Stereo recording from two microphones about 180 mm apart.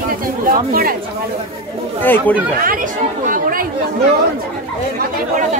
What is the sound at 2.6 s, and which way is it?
Speech, 50° right (ahead or behind).